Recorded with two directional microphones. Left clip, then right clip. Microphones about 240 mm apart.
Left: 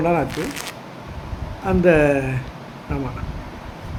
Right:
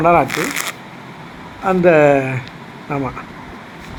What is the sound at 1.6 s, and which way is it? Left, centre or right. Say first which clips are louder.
Speech: right 5 dB; centre.